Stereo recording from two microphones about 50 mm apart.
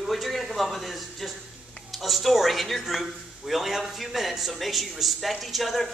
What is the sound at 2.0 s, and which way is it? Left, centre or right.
Speech, centre.